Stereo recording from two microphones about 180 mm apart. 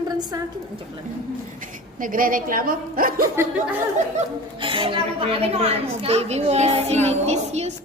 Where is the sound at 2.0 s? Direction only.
50° right (ahead or behind).